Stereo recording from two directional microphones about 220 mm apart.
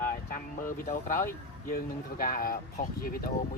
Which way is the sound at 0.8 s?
35° left (ahead or behind).